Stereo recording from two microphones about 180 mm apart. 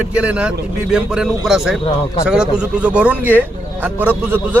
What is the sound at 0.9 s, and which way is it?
Speech, 5° right (ahead or behind).